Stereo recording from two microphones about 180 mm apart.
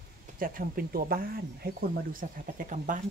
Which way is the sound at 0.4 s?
50° right (ahead or behind).